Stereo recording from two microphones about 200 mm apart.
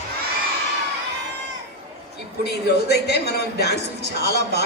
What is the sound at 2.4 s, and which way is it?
A woman's voice, 55° left (ahead or behind).